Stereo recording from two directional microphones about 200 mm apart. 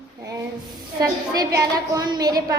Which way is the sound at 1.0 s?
15° right (ahead or behind).